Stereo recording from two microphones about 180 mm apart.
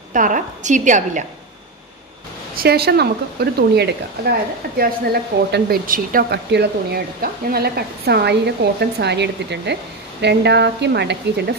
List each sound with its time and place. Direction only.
0.1 s a woman's voice: 45° right (ahead or behind)
2.5 s a woman's voice: 60° right (ahead or behind)